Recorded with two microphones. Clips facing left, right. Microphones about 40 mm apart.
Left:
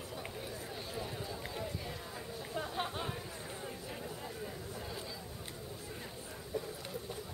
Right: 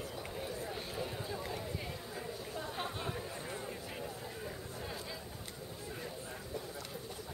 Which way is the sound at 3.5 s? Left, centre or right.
Centre.